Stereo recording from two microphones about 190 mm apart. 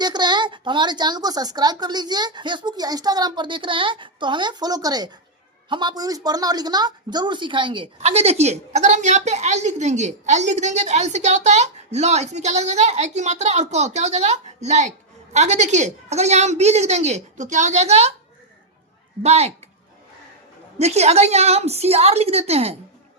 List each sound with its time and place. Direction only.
0.0 s a woman's voice: 20° right (ahead or behind)
19.2 s a woman's voice: 35° right (ahead or behind)
20.7 s a woman's voice: 35° right (ahead or behind)